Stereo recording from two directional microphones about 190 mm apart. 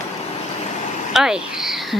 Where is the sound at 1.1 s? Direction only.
Centre (ahead or behind).